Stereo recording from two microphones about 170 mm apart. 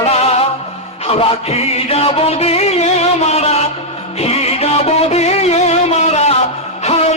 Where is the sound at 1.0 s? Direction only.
35° left (ahead or behind).